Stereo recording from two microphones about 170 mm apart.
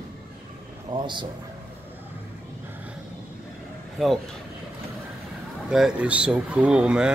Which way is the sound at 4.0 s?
Centre (ahead or behind).